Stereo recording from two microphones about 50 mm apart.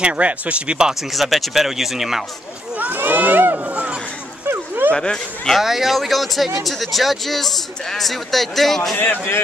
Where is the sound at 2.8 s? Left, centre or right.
Right.